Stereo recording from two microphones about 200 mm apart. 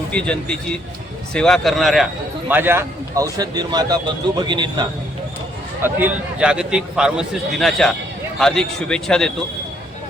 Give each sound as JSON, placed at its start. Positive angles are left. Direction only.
{"t": 0.1, "sound": "a man's voice", "side_deg": 5}
{"t": 2.5, "sound": "speech", "side_deg": -10}
{"t": 5.8, "sound": "a man's voice", "side_deg": -10}